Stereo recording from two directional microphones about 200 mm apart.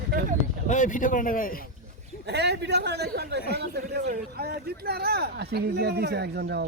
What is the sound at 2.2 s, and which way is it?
Speech, 60° right (ahead or behind).